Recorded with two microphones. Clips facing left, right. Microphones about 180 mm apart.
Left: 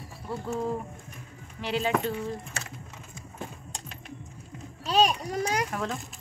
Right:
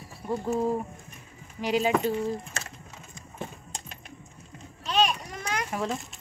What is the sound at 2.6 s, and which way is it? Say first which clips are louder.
Typing: right 1 dB; 10° left (ahead or behind).